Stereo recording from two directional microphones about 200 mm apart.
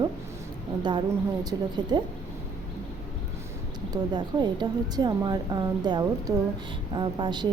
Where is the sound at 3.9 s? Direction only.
20° right (ahead or behind).